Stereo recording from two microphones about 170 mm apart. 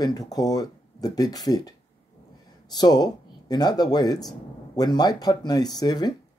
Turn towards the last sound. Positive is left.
turn(degrees=25)  # may be behind; listen again after turning